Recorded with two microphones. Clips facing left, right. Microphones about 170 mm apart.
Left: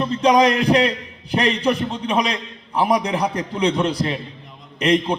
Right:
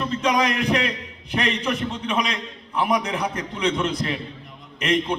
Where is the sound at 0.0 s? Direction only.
35° left (ahead or behind).